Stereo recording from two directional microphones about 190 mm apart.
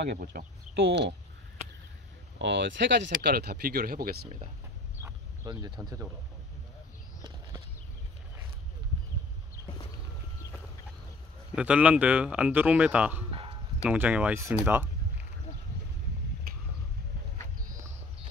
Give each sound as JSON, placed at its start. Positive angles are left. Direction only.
{"t": 0.0, "sound": "speech", "side_deg": -55}
{"t": 2.3, "sound": "speech", "side_deg": -70}
{"t": 5.0, "sound": "a sound", "side_deg": -20}
{"t": 11.5, "sound": "speech", "side_deg": -5}
{"t": 13.3, "sound": "a sound", "side_deg": -30}
{"t": 13.8, "sound": "speech", "side_deg": -10}